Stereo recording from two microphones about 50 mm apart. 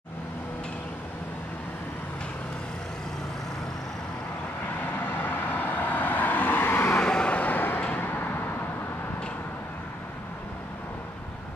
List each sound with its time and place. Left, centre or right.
4.6 s vehicle: left
7.0 s vehicle: centre
7.3 s a sound: left
8.0 s vehicle: left